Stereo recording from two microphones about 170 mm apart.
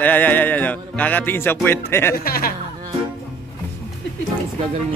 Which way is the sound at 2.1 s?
60° left (ahead or behind).